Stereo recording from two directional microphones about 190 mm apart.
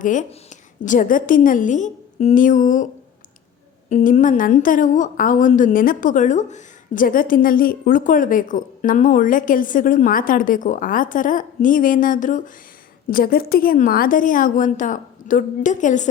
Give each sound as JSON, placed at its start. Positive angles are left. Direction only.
{"t": 0.0, "sound": "a woman's voice", "side_deg": 40}